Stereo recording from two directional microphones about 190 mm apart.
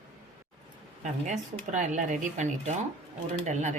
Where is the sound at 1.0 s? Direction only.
40° right (ahead or behind).